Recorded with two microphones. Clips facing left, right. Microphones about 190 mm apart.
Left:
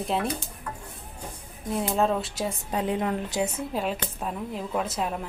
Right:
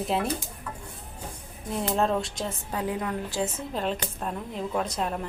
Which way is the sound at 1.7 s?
Centre (ahead or behind).